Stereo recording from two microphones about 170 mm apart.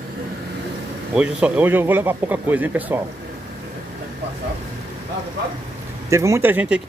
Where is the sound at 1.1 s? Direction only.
5° right (ahead or behind).